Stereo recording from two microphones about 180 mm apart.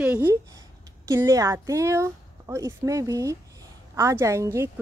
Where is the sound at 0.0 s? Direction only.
10° right (ahead or behind).